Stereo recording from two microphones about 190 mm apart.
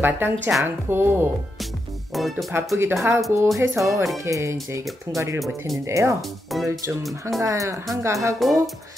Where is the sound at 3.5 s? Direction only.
15° right (ahead or behind).